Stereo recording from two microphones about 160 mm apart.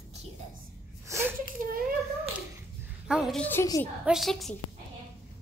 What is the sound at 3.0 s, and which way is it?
Speech, 5° right (ahead or behind).